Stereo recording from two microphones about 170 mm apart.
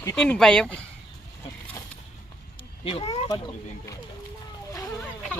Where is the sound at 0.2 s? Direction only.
5° left (ahead or behind).